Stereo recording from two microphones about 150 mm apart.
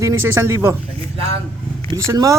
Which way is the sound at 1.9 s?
25° right (ahead or behind).